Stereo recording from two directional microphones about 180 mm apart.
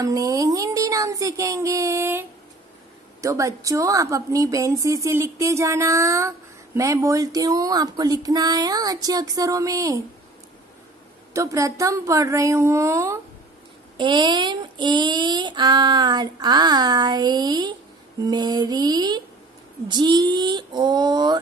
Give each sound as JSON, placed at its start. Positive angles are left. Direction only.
{"t": 0.0, "sound": "a sound", "side_deg": -20}
{"t": 3.2, "sound": "a woman's voice", "side_deg": -15}
{"t": 11.3, "sound": "speech", "side_deg": -15}
{"t": 13.9, "sound": "a woman's voice", "side_deg": -25}